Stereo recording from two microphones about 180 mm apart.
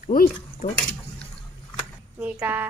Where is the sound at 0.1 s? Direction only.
50° left (ahead or behind).